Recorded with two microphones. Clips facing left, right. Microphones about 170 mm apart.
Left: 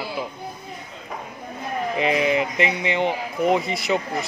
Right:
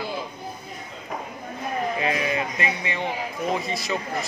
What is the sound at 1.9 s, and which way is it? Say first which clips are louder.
Speech: left 9 dB; 20° left (ahead or behind).